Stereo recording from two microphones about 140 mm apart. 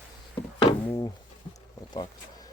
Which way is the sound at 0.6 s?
40° left (ahead or behind).